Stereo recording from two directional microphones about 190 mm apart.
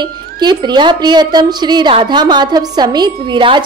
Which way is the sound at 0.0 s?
25° right (ahead or behind).